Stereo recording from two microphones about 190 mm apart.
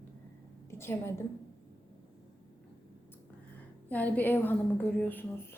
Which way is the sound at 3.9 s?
10° left (ahead or behind).